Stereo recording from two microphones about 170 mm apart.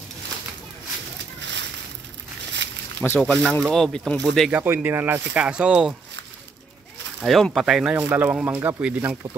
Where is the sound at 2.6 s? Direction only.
90° right.